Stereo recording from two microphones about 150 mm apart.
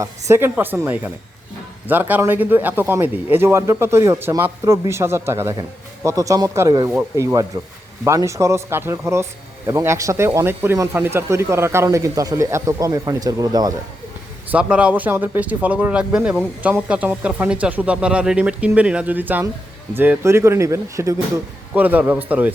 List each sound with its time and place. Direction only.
0.0 s speech: 20° right (ahead or behind)
14.5 s speech: 10° right (ahead or behind)